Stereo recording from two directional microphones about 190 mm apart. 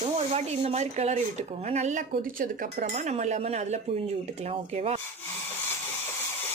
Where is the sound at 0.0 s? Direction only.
35° right (ahead or behind).